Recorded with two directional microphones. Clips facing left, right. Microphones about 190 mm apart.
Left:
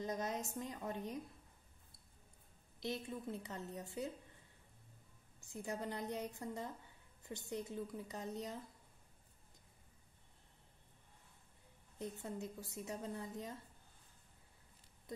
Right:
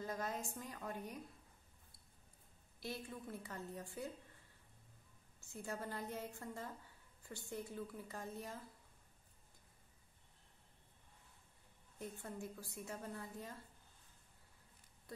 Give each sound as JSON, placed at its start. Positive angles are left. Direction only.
{"t": 0.0, "sound": "a woman's voice", "side_deg": 20}
{"t": 2.8, "sound": "a woman's voice", "side_deg": 20}
{"t": 5.4, "sound": "a woman's voice", "side_deg": 15}
{"t": 12.0, "sound": "a woman's voice", "side_deg": 20}
{"t": 15.1, "sound": "a sound", "side_deg": 20}